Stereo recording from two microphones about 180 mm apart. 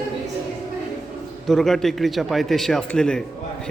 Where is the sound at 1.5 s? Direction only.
Centre (ahead or behind).